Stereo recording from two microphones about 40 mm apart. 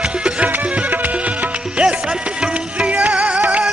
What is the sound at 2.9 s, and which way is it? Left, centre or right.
Music, right.